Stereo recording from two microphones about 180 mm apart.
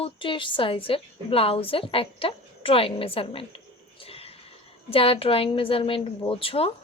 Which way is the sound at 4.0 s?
30° left (ahead or behind).